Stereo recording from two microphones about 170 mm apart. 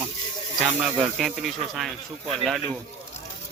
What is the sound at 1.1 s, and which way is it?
Speech, centre (ahead or behind).